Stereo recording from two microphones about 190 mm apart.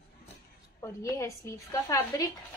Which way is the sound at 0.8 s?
15° left (ahead or behind).